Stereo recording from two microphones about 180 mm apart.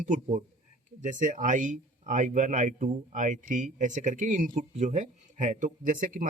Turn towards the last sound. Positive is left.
turn(degrees=-45)  # may be behind; listen again after turning